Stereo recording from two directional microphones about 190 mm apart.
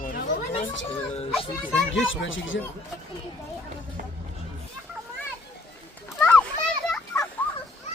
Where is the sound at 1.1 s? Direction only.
30° left (ahead or behind).